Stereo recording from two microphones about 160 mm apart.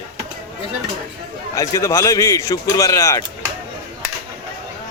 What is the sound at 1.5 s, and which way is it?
A man's voice, 20° left (ahead or behind).